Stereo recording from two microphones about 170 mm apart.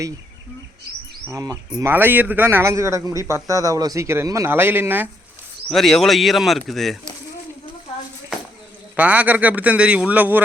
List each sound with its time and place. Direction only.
1.3 s speech: 20° right (ahead or behind)
5.6 s speech: centre (ahead or behind)
9.0 s speech: 10° right (ahead or behind)